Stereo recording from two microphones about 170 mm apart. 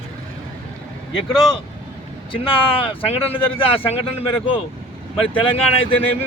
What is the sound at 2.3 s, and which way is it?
Speech, 30° left (ahead or behind).